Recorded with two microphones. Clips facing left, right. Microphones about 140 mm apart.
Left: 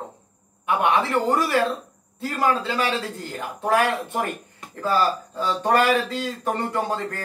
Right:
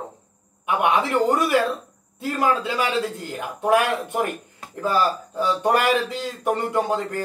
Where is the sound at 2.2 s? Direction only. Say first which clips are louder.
Right 1 dB; 15° right (ahead or behind).